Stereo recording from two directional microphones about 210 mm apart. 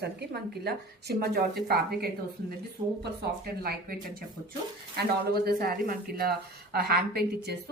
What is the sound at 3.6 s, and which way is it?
Speech, 45° right (ahead or behind).